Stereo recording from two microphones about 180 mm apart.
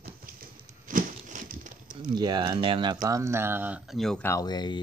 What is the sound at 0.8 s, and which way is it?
Crumpling, 45° right (ahead or behind).